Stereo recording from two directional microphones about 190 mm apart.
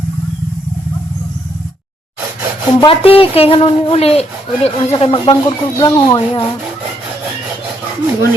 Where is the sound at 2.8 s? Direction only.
30° left (ahead or behind).